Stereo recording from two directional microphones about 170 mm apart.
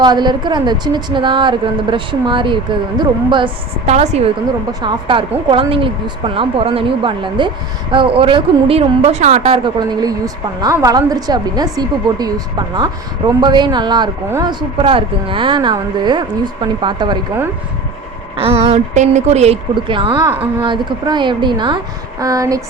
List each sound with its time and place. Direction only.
0.0 s a woman's voice: 25° right (ahead or behind); by 4.3 s 40° right (ahead or behind)
4.8 s speech: 30° right (ahead or behind)
18.3 s a woman's voice: 35° right (ahead or behind); by 22.6 s 20° right (ahead or behind)